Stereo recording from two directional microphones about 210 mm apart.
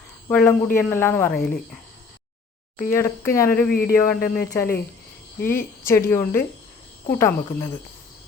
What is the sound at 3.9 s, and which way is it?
Speech, 10° left (ahead or behind).